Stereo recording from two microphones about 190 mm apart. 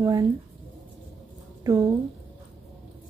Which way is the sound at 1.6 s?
20° right (ahead or behind).